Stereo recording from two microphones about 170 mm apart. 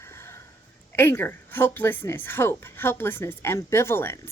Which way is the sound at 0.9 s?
15° left (ahead or behind).